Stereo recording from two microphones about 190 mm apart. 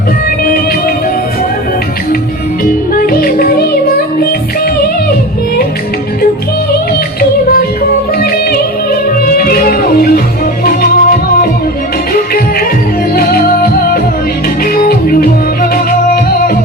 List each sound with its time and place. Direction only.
3.1 s music: 50° left (ahead or behind)
8.2 s music: 55° left (ahead or behind)